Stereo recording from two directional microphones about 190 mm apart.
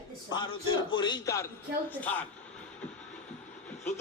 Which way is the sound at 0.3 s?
25° left (ahead or behind).